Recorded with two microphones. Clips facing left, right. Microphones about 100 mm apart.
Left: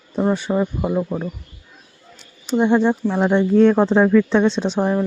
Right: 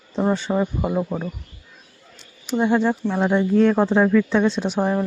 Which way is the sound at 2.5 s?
20° left (ahead or behind).